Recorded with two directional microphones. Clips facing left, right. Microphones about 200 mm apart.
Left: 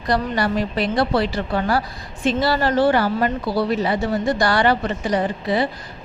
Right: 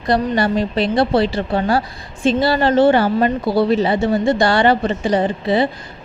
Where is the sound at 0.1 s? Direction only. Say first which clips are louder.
Right 4 dB; 25° right (ahead or behind).